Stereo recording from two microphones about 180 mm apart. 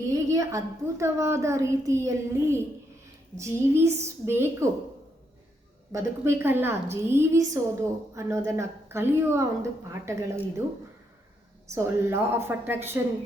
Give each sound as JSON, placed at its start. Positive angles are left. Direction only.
{"t": 0.1, "sound": "a woman's voice", "side_deg": -20}
{"t": 5.9, "sound": "a woman's voice", "side_deg": -15}
{"t": 11.7, "sound": "a woman's voice", "side_deg": -15}